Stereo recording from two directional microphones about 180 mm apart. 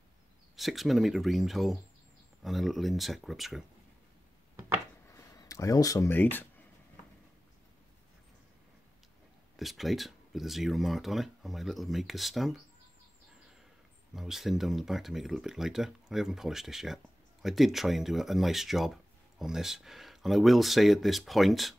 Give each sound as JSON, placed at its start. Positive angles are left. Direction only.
{"t": 0.6, "sound": "speech", "side_deg": 0}
{"t": 5.1, "sound": "speech", "side_deg": 20}
{"t": 9.6, "sound": "speech", "side_deg": 0}
{"t": 14.1, "sound": "speech", "side_deg": 0}